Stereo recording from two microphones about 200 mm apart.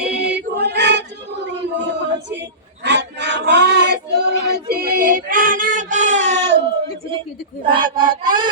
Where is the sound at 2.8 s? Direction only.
60° right (ahead or behind).